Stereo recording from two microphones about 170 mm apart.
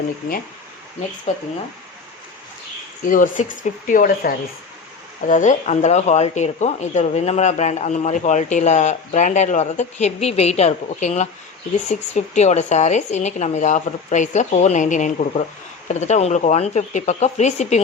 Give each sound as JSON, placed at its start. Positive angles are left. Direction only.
{"t": 3.0, "sound": "speech", "side_deg": 50}
{"t": 5.3, "sound": "speech", "side_deg": 45}